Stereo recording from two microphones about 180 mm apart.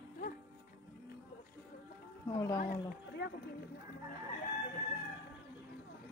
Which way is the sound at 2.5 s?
50° left (ahead or behind).